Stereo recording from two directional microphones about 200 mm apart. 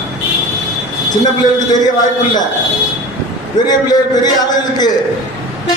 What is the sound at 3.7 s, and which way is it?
Speech, 20° left (ahead or behind).